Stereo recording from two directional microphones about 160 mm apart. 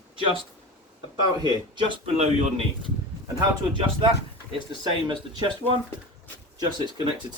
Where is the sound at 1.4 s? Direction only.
30° right (ahead or behind).